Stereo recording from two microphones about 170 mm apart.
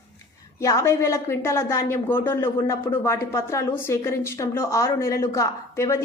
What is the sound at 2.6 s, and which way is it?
Speech, 30° left (ahead or behind).